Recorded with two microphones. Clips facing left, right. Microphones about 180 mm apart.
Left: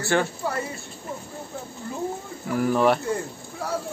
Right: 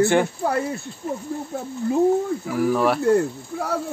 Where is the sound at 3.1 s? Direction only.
60° right (ahead or behind).